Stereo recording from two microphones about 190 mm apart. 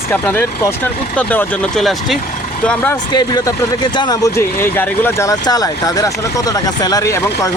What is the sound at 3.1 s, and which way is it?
Speech, 20° left (ahead or behind).